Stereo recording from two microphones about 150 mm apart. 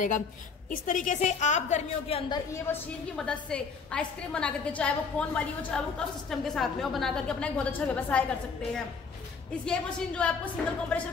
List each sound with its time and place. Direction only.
0.7 s a woman's voice: 60° left (ahead or behind); by 2.3 s 40° left (ahead or behind)
2.3 s a woman's voice: 20° left (ahead or behind)
3.2 s a woman's voice: 5° left (ahead or behind)
9.7 s a woman's voice: 5° left (ahead or behind)